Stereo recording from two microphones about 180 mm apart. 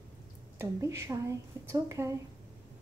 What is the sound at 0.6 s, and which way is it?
A woman's voice, 15° right (ahead or behind).